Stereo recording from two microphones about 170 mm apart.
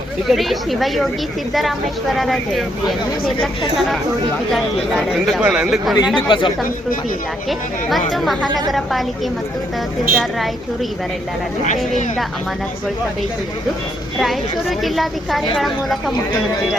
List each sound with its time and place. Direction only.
0.3 s a woman's voice: centre (ahead or behind)
6.2 s speech: 30° left (ahead or behind)
8.1 s a woman's voice: centre (ahead or behind)
14.2 s a woman's voice: centre (ahead or behind)